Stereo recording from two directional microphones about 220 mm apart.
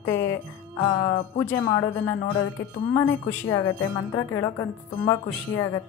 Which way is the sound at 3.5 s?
15° left (ahead or behind).